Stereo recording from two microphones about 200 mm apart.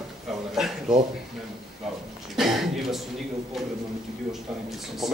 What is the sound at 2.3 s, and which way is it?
Speech, centre (ahead or behind).